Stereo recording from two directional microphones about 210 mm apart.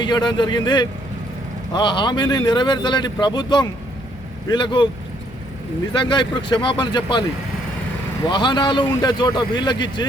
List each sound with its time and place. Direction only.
0.0 s speech: 20° left (ahead or behind)
5.9 s speech: 20° left (ahead or behind)